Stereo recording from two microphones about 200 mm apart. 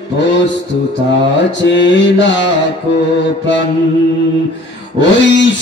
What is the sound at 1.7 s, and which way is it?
Mantra, 65° left (ahead or behind).